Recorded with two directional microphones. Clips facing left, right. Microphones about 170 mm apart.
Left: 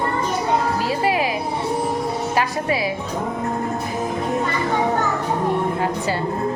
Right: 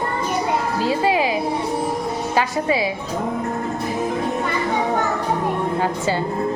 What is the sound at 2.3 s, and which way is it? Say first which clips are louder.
Speech: right 3 dB; 25° right (ahead or behind).